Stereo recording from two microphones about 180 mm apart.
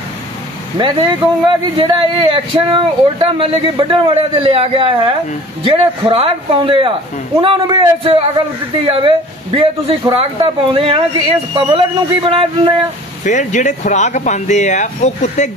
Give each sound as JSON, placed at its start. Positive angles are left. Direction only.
{"t": 0.7, "sound": "a man's voice", "side_deg": -25}
{"t": 13.2, "sound": "speech", "side_deg": 45}